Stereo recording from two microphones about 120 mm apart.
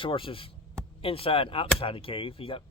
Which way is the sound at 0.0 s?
45° left (ahead or behind).